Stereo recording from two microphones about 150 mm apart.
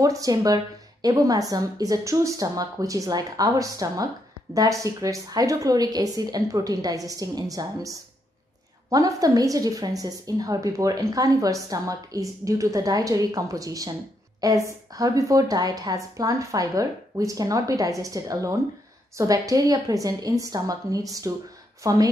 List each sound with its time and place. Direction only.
0.0 s a woman's voice: 25° right (ahead or behind)
8.9 s a woman's voice: 25° right (ahead or behind)